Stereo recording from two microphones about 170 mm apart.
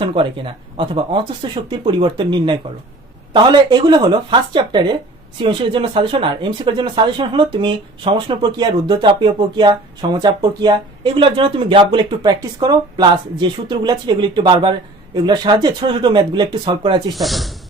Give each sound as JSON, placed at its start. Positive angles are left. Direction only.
{"t": 0.0, "sound": "speech", "side_deg": -30}
{"t": 17.2, "sound": "speech", "side_deg": 0}